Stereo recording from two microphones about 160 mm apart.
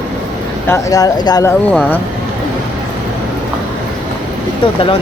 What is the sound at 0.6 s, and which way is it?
Speech, 20° left (ahead or behind).